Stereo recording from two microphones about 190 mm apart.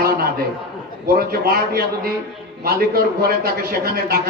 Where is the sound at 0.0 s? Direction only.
55° right (ahead or behind).